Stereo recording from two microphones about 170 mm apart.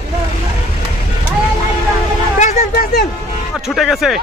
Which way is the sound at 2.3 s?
45° left (ahead or behind).